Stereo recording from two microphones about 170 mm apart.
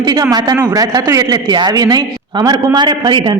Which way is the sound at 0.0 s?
20° right (ahead or behind).